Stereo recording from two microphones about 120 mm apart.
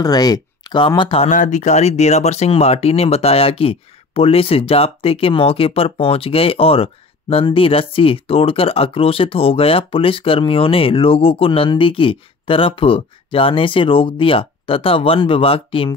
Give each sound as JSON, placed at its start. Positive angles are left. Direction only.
{"t": 0.0, "sound": "speech", "side_deg": 35}
{"t": 1.3, "sound": "speech", "side_deg": 90}